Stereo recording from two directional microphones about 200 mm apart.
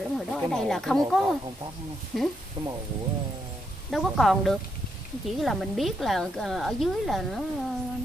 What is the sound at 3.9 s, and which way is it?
Speech, centre (ahead or behind).